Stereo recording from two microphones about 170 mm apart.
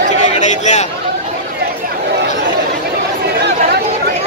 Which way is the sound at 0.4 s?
45° left (ahead or behind).